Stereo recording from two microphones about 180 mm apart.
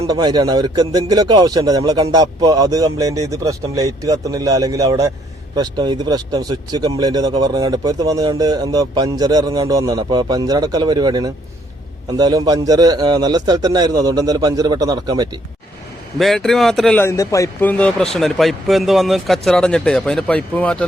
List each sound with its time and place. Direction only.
0.1 s speech: 20° right (ahead or behind)
16.1 s a man's voice: centre (ahead or behind)